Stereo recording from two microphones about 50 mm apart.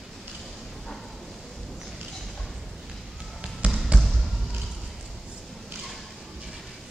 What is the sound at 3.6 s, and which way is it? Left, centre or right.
Trickle, right.